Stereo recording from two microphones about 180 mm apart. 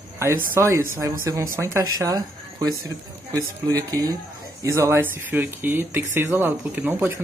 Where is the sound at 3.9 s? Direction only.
20° right (ahead or behind).